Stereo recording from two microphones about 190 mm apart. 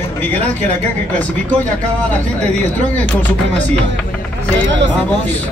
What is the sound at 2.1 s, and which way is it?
Speech, 5° left (ahead or behind).